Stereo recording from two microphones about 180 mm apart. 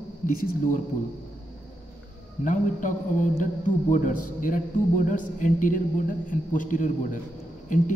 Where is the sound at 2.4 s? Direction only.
45° left (ahead or behind).